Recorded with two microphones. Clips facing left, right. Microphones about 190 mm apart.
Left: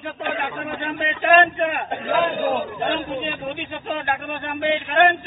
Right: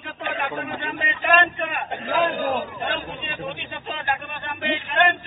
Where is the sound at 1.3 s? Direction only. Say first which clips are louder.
Left 5 dB; 45° left (ahead or behind).